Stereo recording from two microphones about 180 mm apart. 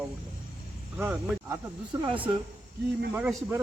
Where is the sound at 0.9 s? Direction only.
10° right (ahead or behind).